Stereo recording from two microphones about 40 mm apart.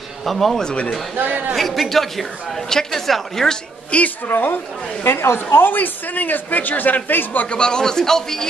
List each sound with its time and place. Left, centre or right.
0.2 s a man's voice: centre
3.9 s a woman's voice: left
4.3 s speech: left
5.0 s a woman's voice: left
5.8 s speech: left
7.4 s a man's voice: left